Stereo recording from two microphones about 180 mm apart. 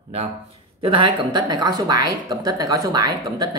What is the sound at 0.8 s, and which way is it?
Speech, 25° right (ahead or behind).